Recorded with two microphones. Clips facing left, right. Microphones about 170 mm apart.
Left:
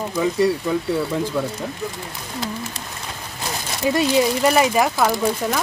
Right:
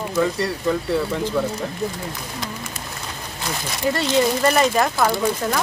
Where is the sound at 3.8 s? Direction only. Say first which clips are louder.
Left 2 dB; 10° left (ahead or behind).